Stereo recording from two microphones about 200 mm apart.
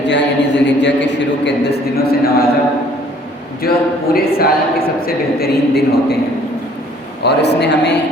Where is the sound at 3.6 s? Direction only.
50° left (ahead or behind).